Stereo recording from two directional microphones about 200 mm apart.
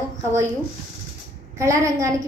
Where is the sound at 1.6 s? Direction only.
15° right (ahead or behind).